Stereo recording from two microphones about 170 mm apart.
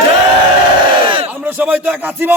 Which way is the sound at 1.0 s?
30° right (ahead or behind).